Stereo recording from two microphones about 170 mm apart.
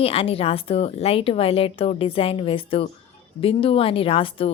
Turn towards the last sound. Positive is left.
turn(degrees=35)  # may be behind; listen again after turning